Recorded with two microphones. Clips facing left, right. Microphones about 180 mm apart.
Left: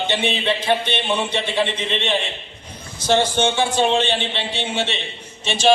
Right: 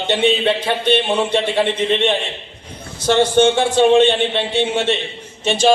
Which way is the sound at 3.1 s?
60° right (ahead or behind).